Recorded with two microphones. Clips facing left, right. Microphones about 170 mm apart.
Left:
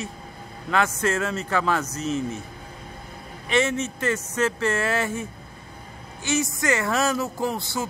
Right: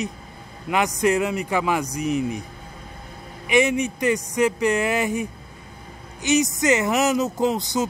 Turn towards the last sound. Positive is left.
turn(degrees=-20)  # may be behind; listen again after turning